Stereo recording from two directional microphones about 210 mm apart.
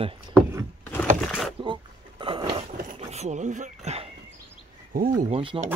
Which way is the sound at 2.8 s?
35° right (ahead or behind).